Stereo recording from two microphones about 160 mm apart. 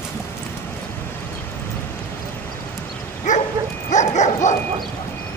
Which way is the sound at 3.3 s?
50° left (ahead or behind).